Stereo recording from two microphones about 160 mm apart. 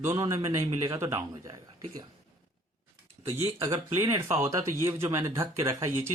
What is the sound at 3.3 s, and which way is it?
Speech, 15° right (ahead or behind).